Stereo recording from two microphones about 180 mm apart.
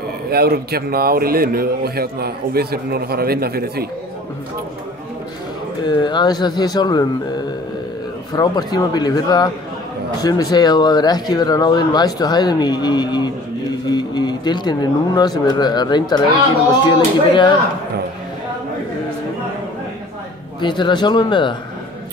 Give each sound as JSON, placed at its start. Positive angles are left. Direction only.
{"t": 0.3, "sound": "a man's voice", "side_deg": -60}
{"t": 5.9, "sound": "speech", "side_deg": 25}
{"t": 17.3, "sound": "speech", "side_deg": 25}
{"t": 20.6, "sound": "speech", "side_deg": 25}